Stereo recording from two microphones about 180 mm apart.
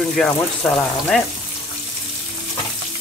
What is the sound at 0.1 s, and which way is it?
Speech, centre (ahead or behind).